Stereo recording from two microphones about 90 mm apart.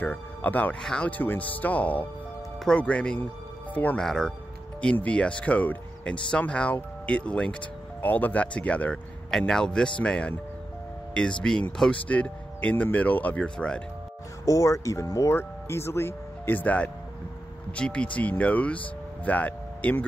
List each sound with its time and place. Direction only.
0.0 s speech: 20° left (ahead or behind)
4.0 s speech: 5° left (ahead or behind)
4.9 s speech: 15° left (ahead or behind)
11.7 s speech: 5° left (ahead or behind)
12.1 s speech: 15° left (ahead or behind)
14.4 s speech: 35° left (ahead or behind); by 20.1 s 15° left (ahead or behind)